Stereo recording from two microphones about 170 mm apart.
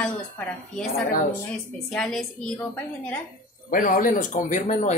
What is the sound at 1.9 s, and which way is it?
A woman's voice, 5° left (ahead or behind).